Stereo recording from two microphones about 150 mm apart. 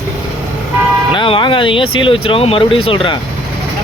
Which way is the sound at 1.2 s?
35° left (ahead or behind).